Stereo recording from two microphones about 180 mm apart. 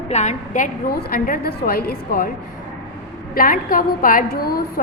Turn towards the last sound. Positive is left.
turn(degrees=55)  # may be behind; listen again after turning